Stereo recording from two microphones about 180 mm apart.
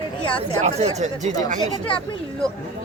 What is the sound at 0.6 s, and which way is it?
Speech, 35° right (ahead or behind).